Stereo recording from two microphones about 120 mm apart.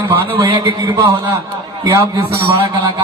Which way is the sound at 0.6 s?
25° right (ahead or behind).